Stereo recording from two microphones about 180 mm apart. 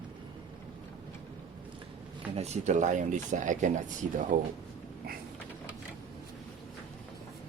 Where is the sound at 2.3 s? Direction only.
35° right (ahead or behind).